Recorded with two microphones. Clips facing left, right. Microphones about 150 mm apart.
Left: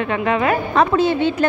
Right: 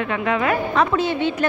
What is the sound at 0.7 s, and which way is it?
Speech, 35° left (ahead or behind).